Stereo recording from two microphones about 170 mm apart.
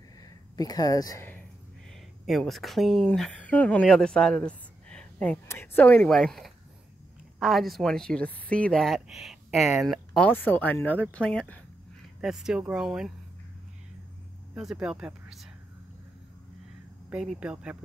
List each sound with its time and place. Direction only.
0.2 s speech: 20° left (ahead or behind)
1.9 s speech: centre (ahead or behind)
10.3 s speech: 10° left (ahead or behind); by 13.1 s 5° right (ahead or behind)
14.5 s speech: centre (ahead or behind)
17.1 s speech: 5° right (ahead or behind)